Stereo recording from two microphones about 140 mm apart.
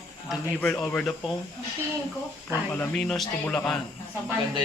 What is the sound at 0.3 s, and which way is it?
A man's voice, 5° left (ahead or behind).